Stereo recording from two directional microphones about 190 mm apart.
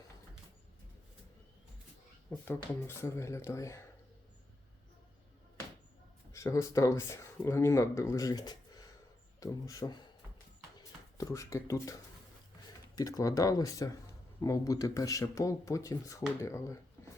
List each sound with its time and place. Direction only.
2.3 s speech: 10° left (ahead or behind)
6.3 s speech: 15° left (ahead or behind)
11.2 s speech: 15° left (ahead or behind)
13.0 s speech: 20° left (ahead or behind)